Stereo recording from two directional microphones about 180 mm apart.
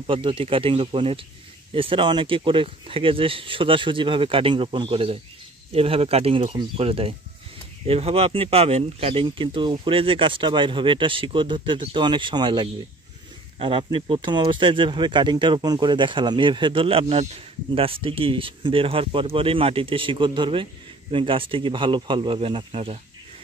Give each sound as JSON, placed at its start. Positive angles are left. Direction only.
{"t": 0.0, "sound": "speech", "side_deg": -30}